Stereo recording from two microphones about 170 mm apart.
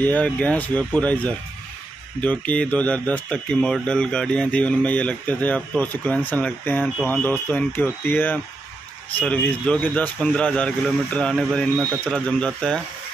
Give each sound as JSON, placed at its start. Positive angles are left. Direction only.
{"t": 0.0, "sound": "speech", "side_deg": 10}